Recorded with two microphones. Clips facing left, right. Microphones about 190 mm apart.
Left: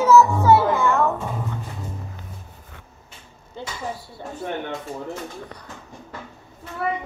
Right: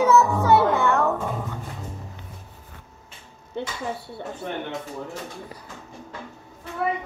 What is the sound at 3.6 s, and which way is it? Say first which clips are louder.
Speech: right 4 dB; 65° right (ahead or behind).